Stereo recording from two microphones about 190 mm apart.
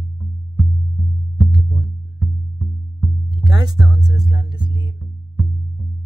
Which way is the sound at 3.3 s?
25° right (ahead or behind).